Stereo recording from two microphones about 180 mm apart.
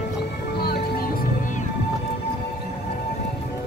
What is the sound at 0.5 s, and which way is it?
Music, 60° left (ahead or behind).